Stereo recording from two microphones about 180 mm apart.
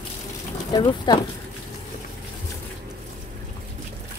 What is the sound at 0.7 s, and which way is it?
Speech, 25° left (ahead or behind).